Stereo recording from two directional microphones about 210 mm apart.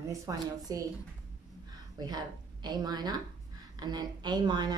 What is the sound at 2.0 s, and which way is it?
A woman's voice, 20° right (ahead or behind).